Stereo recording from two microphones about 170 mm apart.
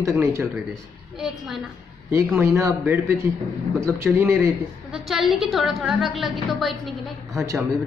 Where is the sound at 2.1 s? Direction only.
15° right (ahead or behind).